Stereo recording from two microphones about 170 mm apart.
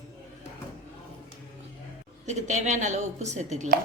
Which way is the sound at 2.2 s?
45° right (ahead or behind).